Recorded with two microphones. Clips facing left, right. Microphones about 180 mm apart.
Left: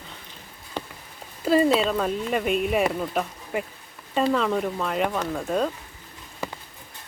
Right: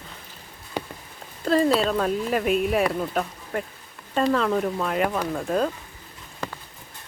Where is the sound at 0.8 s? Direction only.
10° right (ahead or behind).